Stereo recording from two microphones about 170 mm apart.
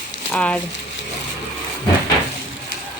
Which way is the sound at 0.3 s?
5° left (ahead or behind).